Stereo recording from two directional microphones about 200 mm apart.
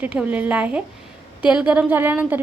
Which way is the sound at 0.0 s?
5° right (ahead or behind).